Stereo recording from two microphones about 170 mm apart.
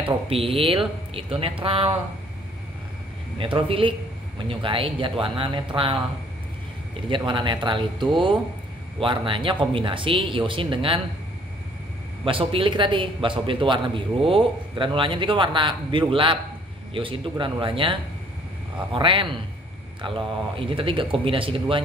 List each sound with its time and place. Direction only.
0.0 s speech: 35° right (ahead or behind)
3.3 s speech: 30° right (ahead or behind)
7.1 s a man's voice: 30° right (ahead or behind)
12.3 s a man's voice: 30° right (ahead or behind)
18.9 s a man's voice: 30° right (ahead or behind)